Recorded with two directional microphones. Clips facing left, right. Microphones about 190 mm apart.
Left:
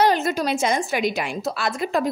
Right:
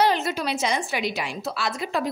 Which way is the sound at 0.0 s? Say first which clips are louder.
Left 3 dB; 45° left (ahead or behind).